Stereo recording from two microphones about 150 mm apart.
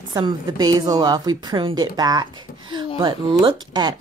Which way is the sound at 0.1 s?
25° right (ahead or behind).